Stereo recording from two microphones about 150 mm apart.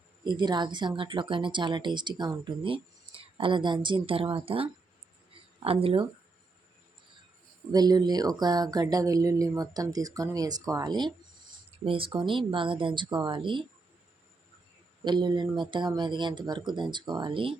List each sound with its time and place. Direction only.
0.3 s speech: 30° right (ahead or behind)
7.7 s speech: 25° right (ahead or behind)
15.0 s speech: 30° right (ahead or behind)